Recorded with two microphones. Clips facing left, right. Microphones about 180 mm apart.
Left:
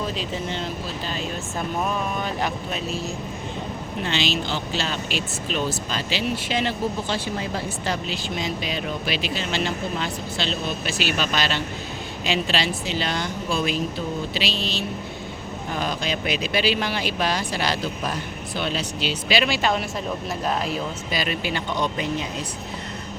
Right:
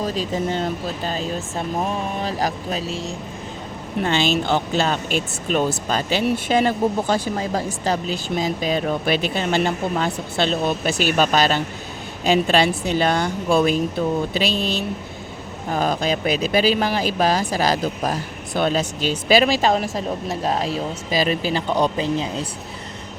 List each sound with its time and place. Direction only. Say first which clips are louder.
0.0 s speech: right 5 dB; 40° right (ahead or behind)
4.0 s speech: right 6 dB; 50° right (ahead or behind)
15.7 s speech: right 6 dB; 45° right (ahead or behind); by 22.4 s 30° right (ahead or behind)